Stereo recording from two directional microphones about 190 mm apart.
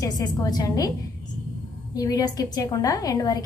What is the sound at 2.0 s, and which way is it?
A woman's voice, 20° left (ahead or behind).